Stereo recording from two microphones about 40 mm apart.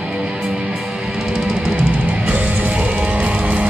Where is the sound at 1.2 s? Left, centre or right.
Centre.